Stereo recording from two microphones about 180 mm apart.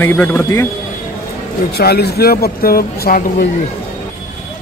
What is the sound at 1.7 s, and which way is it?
Speech, 60° left (ahead or behind).